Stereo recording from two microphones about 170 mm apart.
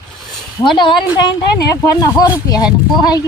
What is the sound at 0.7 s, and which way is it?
Speech, 30° left (ahead or behind).